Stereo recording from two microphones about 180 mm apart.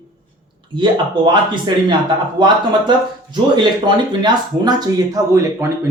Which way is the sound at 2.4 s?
25° right (ahead or behind).